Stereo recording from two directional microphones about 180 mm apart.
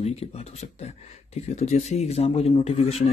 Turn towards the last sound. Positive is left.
turn(degrees=35)  # may be behind; listen again after turning